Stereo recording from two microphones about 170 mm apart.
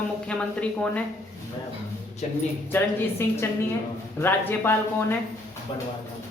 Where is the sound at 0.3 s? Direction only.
5° left (ahead or behind).